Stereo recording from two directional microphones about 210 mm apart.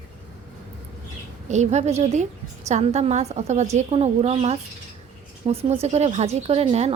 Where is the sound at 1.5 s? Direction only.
35° right (ahead or behind).